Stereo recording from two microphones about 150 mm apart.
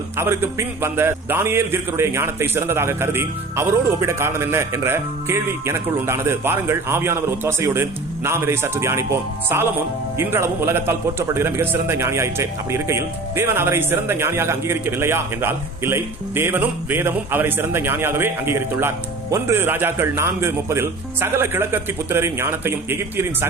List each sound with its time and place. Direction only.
0.2 s a man's voice: 15° right (ahead or behind)